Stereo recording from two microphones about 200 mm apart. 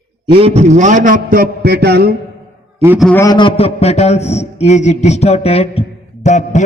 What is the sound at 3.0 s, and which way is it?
A man's voice, 10° left (ahead or behind).